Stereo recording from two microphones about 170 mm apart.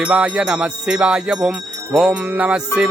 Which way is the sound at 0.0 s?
5° right (ahead or behind).